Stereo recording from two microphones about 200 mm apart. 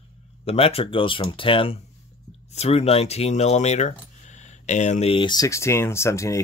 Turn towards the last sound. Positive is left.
turn(degrees=15)  # may be behind; listen again after turning